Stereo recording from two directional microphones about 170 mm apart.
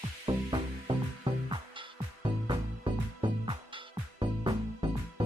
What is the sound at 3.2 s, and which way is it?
Music, 30° right (ahead or behind).